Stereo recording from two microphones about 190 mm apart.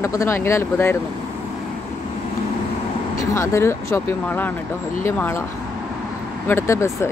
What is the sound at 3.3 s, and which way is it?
Speech, 15° left (ahead or behind).